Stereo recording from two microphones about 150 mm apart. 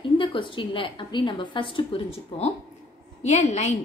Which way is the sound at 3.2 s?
50° left (ahead or behind).